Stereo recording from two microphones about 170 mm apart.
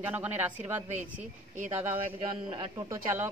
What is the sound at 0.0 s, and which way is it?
Speech, 10° right (ahead or behind).